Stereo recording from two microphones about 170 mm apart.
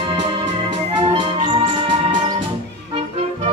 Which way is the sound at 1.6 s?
30° right (ahead or behind).